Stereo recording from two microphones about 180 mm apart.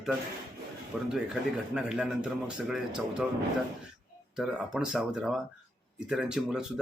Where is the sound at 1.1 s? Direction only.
5° right (ahead or behind).